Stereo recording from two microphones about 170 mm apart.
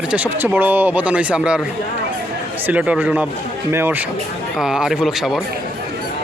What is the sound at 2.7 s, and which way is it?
Speech, 10° right (ahead or behind).